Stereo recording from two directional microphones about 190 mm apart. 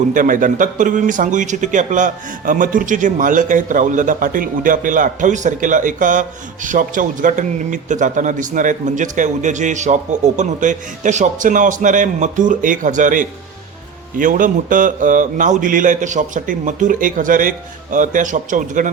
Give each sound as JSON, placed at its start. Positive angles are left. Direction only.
{"t": 0.1, "sound": "speech", "side_deg": -45}